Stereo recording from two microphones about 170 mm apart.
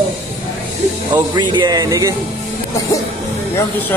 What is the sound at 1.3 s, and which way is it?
Speech, 25° right (ahead or behind).